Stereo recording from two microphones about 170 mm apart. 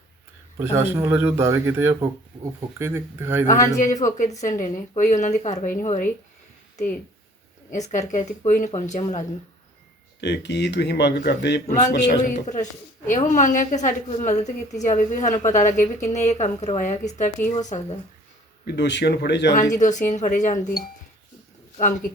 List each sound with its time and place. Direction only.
0.6 s speech: 10° right (ahead or behind)
3.8 s a woman's voice: 45° left (ahead or behind)
7.7 s a woman's voice: 40° left (ahead or behind)
10.2 s speech: 90° left
11.9 s a man's voice: 90° left
12.2 s a woman's voice: 45° left (ahead or behind)
18.6 s speech: 80° left
19.7 s a woman's voice: 45° left (ahead or behind)